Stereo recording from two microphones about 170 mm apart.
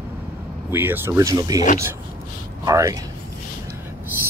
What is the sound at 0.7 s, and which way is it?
Speech, 10° right (ahead or behind).